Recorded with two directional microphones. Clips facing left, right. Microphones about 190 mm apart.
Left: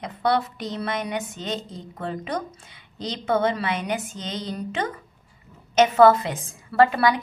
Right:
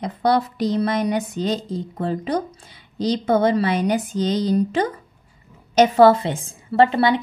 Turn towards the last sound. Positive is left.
turn(degrees=-25)  # may be behind; listen again after turning